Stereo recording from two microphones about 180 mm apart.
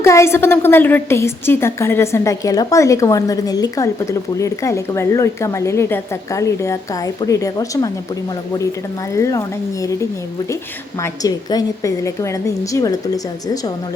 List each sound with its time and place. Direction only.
0.0 s a woman's voice: 15° left (ahead or behind)
9.1 s a woman's voice: 15° left (ahead or behind)
11.0 s a woman's voice: 20° left (ahead or behind)